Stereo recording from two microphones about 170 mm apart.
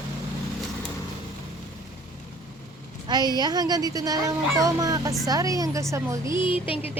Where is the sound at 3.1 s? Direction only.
25° right (ahead or behind).